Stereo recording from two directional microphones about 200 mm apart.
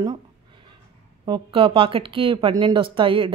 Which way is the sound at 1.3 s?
25° right (ahead or behind).